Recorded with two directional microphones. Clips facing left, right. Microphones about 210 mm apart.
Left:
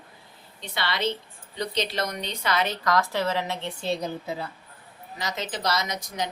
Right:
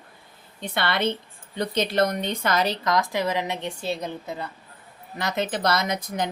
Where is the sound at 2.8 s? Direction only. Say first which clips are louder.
Right 1 dB; 15° right (ahead or behind).